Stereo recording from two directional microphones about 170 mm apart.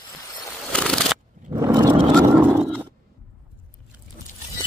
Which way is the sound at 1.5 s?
20° right (ahead or behind).